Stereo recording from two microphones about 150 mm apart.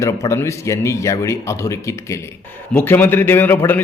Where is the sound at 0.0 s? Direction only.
20° left (ahead or behind).